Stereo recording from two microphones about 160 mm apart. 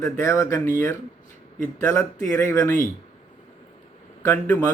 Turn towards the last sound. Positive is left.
turn(degrees=15)  # may be behind; listen again after turning